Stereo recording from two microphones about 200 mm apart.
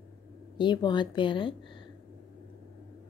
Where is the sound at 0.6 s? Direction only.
20° left (ahead or behind).